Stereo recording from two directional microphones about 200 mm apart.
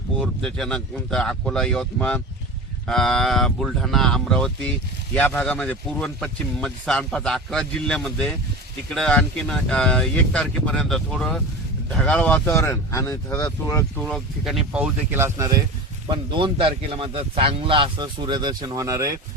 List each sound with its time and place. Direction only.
0.2 s speech: centre (ahead or behind)
14.0 s speech: centre (ahead or behind)
16.0 s a man's voice: 25° right (ahead or behind)